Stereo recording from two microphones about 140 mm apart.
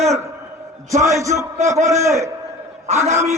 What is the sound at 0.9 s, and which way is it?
A man's voice, 20° right (ahead or behind).